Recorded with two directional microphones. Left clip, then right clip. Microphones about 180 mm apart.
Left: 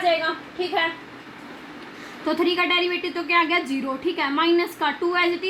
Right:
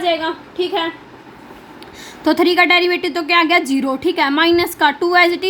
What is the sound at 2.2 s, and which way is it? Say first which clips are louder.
A woman's voice: right 9 dB; 60° right (ahead or behind).